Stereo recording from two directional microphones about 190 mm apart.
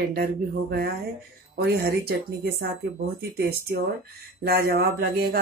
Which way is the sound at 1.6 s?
55° right (ahead or behind).